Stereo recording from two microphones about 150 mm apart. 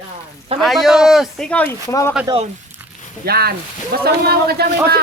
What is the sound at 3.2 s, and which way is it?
A man's voice, 90° right.